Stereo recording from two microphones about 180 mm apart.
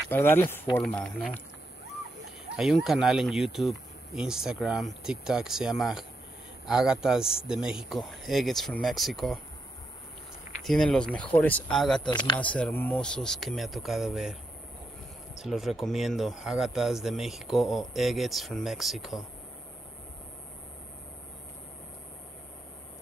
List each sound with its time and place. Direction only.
0.1 s speech: 10° left (ahead or behind)
2.5 s speech: centre (ahead or behind)
10.6 s speech: centre (ahead or behind)
12.1 s speech: 25° left (ahead or behind)
12.4 s speech: 5° left (ahead or behind)
15.3 s speech: centre (ahead or behind)